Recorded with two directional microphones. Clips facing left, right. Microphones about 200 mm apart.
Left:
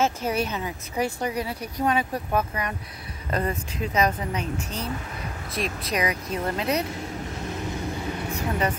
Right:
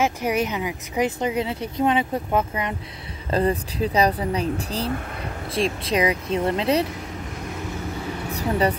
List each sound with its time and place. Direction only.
0.0 s speech: 15° right (ahead or behind)
8.3 s vehicle: 35° right (ahead or behind)